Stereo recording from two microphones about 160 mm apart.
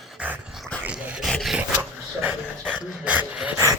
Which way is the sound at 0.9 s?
5° right (ahead or behind).